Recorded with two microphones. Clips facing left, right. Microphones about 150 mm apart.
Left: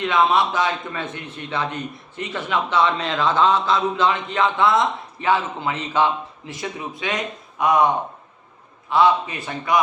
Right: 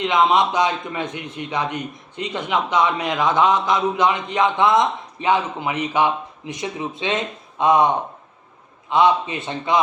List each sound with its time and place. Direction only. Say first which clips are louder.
0.0 s a man's voice: right 1 dB; 20° right (ahead or behind)